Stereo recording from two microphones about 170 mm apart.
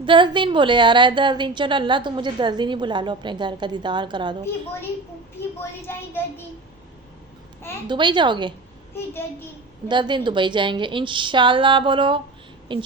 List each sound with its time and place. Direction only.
0.0 s a woman's voice: 30° right (ahead or behind)
5.5 s speech: 15° left (ahead or behind)
7.9 s a woman's voice: 25° right (ahead or behind)
9.9 s a woman's voice: 25° right (ahead or behind)